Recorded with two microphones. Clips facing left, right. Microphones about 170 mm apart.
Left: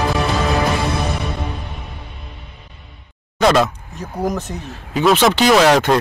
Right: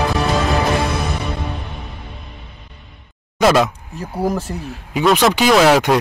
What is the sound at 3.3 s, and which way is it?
A man's voice, 5° right (ahead or behind).